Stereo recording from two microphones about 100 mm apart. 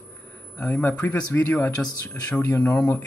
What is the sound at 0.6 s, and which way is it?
Speech, 15° left (ahead or behind).